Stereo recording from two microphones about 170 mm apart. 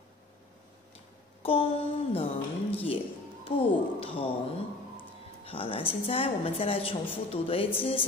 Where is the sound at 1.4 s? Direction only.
35° left (ahead or behind).